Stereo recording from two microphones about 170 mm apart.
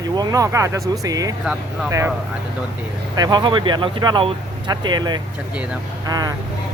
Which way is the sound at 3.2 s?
25° right (ahead or behind).